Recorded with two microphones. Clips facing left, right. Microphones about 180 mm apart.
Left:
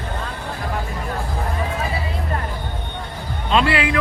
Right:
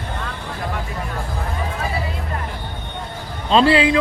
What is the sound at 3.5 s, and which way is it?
Speech, 30° right (ahead or behind).